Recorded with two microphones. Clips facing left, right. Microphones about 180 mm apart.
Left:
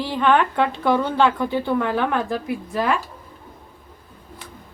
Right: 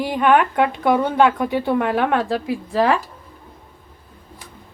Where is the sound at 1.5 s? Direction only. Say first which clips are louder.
Right 2 dB; 65° right (ahead or behind).